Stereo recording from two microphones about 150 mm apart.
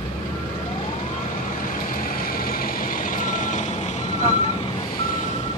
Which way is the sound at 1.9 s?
70° left (ahead or behind).